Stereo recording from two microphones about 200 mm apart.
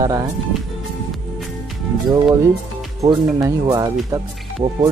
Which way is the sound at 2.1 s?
15° right (ahead or behind).